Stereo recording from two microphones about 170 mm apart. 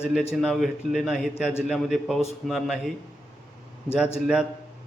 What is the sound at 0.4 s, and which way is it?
A man's voice, centre (ahead or behind).